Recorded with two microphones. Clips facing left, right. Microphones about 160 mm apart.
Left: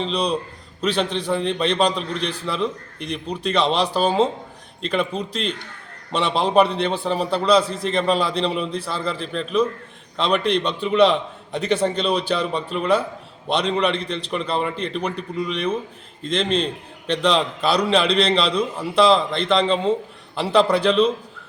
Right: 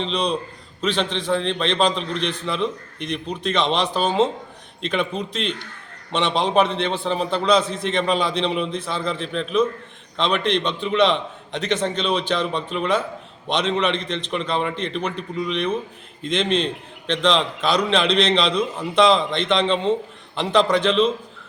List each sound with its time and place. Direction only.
0.0 s a man's voice: 5° left (ahead or behind)
17.1 s a man's voice: 10° left (ahead or behind)